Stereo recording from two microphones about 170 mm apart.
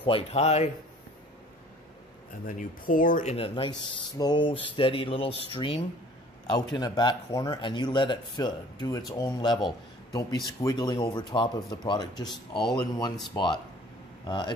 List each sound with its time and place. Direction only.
0.0 s speech: 35° left (ahead or behind)
2.4 s speech: 55° left (ahead or behind)
3.3 s speech: 30° left (ahead or behind)